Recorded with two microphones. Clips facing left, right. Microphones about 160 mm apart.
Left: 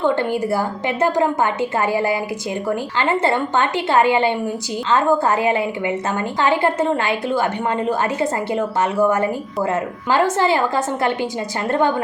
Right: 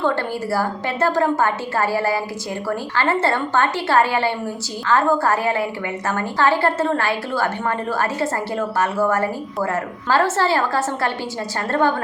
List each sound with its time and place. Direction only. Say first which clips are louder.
0.0 s a woman's voice: left 3 dB; 20° left (ahead or behind)